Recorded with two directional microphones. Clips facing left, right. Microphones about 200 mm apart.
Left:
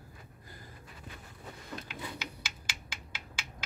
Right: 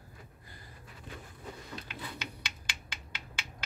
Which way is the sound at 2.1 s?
5° left (ahead or behind).